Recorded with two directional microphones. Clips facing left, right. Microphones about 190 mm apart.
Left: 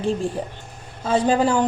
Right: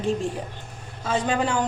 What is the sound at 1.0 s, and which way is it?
Speech, 30° left (ahead or behind).